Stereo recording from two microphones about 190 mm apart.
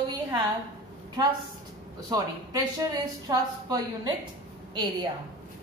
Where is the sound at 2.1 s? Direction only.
20° right (ahead or behind).